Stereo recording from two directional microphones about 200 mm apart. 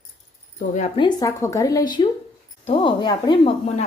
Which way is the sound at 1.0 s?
20° left (ahead or behind).